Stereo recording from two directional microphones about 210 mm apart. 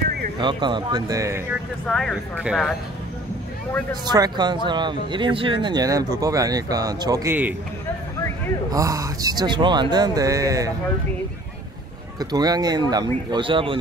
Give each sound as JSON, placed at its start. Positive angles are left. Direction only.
{"t": 0.4, "sound": "speech", "side_deg": -20}
{"t": 1.9, "sound": "speech", "side_deg": 5}
{"t": 4.0, "sound": "speech", "side_deg": -20}
{"t": 8.7, "sound": "speech", "side_deg": -15}
{"t": 12.2, "sound": "speech", "side_deg": -20}